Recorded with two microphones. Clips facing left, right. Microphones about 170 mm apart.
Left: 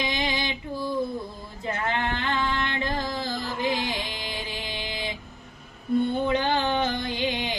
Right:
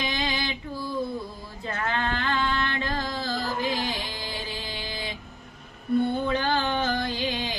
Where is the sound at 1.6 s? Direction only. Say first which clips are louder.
Left 1 dB; 20° left (ahead or behind).